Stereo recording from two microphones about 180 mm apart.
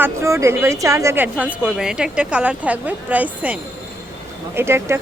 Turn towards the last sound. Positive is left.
turn(degrees=-15)  # may be behind; listen again after turning